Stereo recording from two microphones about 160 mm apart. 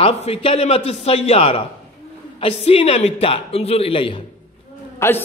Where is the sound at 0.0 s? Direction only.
35° left (ahead or behind).